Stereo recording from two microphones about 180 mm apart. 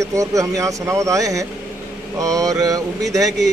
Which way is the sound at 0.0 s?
15° right (ahead or behind).